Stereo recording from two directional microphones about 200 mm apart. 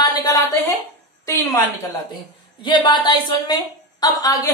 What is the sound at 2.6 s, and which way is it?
A woman's voice, 20° left (ahead or behind).